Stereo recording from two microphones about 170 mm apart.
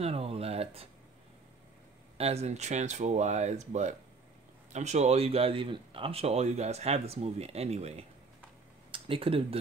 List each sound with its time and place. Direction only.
0.0 s speech: 35° right (ahead or behind)
2.1 s speech: 40° right (ahead or behind)